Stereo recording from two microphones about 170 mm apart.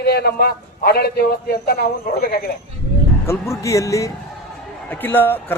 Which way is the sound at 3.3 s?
15° left (ahead or behind).